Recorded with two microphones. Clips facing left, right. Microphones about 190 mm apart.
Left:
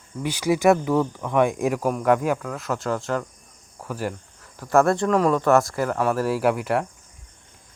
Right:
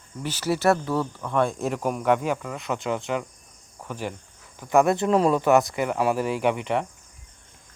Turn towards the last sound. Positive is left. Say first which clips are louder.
# left 2 dB
turn(degrees=5)  # may be behind; listen again after turning